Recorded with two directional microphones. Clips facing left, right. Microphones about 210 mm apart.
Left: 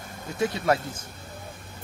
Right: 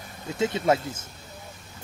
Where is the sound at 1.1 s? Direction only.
55° left (ahead or behind).